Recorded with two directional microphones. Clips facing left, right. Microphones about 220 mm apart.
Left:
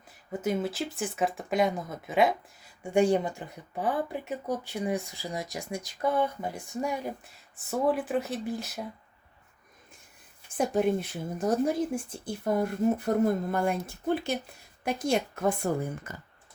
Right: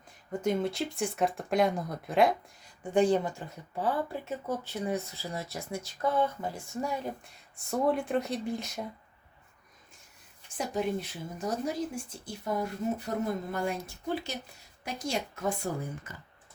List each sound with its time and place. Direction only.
0.3 s speech: 5° left (ahead or behind)
2.8 s speech: 10° left (ahead or behind)
7.3 s speech: 5° left (ahead or behind)
10.6 s a woman's voice: 50° left (ahead or behind)